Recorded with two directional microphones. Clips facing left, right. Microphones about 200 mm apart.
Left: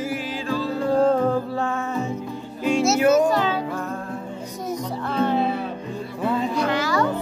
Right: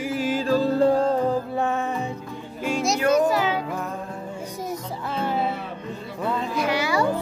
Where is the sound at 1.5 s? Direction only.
20° right (ahead or behind).